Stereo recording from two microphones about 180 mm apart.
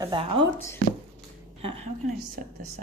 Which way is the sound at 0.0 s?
30° right (ahead or behind).